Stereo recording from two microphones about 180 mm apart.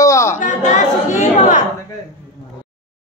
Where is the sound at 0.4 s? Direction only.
40° left (ahead or behind).